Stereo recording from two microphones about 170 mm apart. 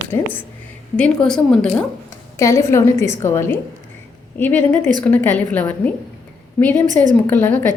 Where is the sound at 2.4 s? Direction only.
20° left (ahead or behind).